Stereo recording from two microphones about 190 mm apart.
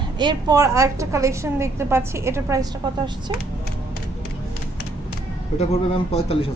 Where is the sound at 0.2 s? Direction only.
25° right (ahead or behind).